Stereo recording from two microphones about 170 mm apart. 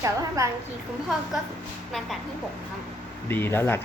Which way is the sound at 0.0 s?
20° right (ahead or behind).